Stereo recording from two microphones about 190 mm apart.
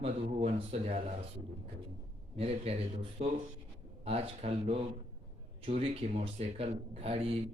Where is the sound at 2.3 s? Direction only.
30° right (ahead or behind).